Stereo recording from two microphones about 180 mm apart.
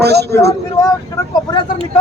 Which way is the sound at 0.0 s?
65° right (ahead or behind).